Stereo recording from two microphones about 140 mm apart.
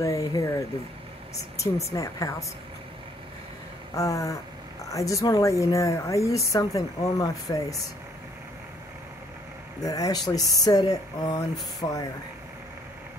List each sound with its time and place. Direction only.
0.0 s speech: 25° left (ahead or behind)
1.6 s speech: 20° left (ahead or behind)
3.9 s speech: 25° left (ahead or behind)
9.8 s speech: 25° left (ahead or behind)